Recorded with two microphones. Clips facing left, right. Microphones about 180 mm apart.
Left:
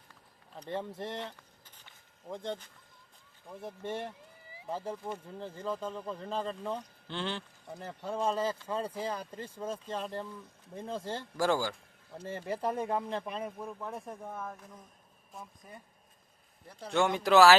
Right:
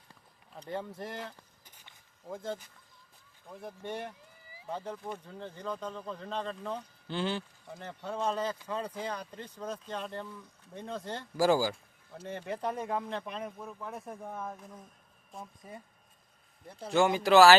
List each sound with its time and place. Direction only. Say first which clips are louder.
0.5 s speech: left 1 dB; centre (ahead or behind)
8.6 s speech: left 1 dB; 30° left (ahead or behind)
9.0 s speech: left 1 dB; 5° left (ahead or behind)
15.3 s speech: right 2 dB; centre (ahead or behind)
16.8 s speech: right 2 dB; centre (ahead or behind)